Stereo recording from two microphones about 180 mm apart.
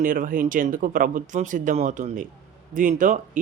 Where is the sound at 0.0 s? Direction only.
50° right (ahead or behind).